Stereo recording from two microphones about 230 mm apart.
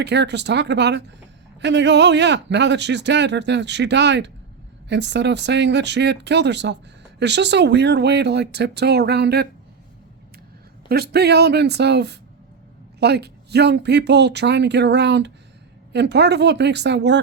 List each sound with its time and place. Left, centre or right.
0.0 s speech: right
10.8 s speech: right